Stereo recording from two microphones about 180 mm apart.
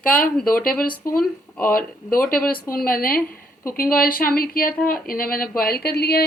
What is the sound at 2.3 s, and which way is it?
Speech, 5° left (ahead or behind).